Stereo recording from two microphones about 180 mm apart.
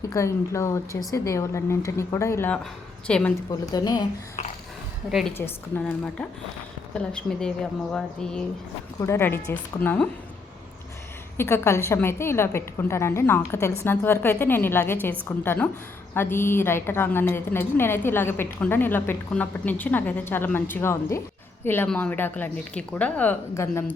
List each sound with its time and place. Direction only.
0.1 s a woman's voice: 15° left (ahead or behind)
3.7 s speech: 20° left (ahead or behind)
5.4 s a woman's voice: 15° left (ahead or behind)
9.0 s a woman's voice: 15° left (ahead or behind)
11.3 s a woman's voice: 15° left (ahead or behind)